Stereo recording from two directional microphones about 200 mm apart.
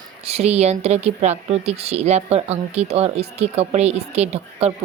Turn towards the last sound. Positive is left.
turn(degrees=-35)  # may be behind; listen again after turning